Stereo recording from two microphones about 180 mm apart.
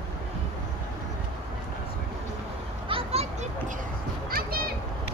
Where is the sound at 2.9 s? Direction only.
35° right (ahead or behind).